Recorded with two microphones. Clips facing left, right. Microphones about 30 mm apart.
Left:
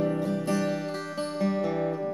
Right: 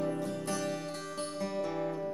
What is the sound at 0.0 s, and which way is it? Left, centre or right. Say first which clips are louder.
Music: left 7 dB; centre.